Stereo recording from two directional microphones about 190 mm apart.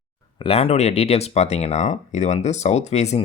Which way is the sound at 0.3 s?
30° left (ahead or behind).